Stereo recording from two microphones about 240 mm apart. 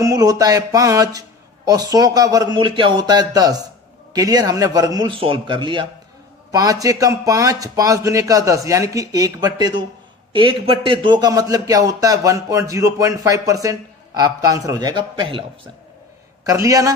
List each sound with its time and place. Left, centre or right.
0.0 s a man's voice: centre
16.4 s a man's voice: centre